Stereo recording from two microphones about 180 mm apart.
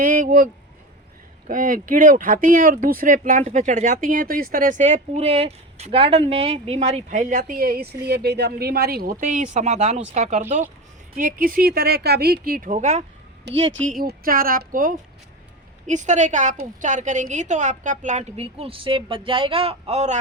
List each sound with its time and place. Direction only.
0.0 s a woman's voice: 50° right (ahead or behind)
11.2 s a woman's voice: 50° right (ahead or behind)
14.0 s a woman's voice: 55° right (ahead or behind); by 20.1 s 35° right (ahead or behind)